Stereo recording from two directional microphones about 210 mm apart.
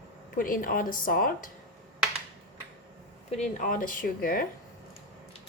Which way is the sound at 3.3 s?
35° left (ahead or behind).